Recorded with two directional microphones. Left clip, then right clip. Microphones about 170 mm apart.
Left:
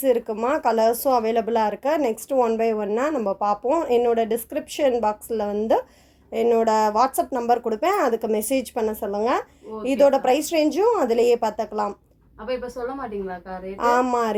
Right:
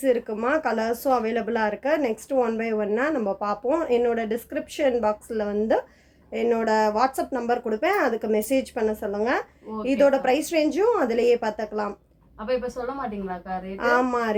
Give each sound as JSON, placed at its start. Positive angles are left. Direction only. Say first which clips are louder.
{"t": 0.0, "sound": "speech", "louder": "left 2 dB", "side_deg": 25}
{"t": 12.5, "sound": "a woman's voice", "louder": "right 1 dB", "side_deg": 0}
{"t": 13.7, "sound": "speech", "louder": "left 2 dB", "side_deg": 30}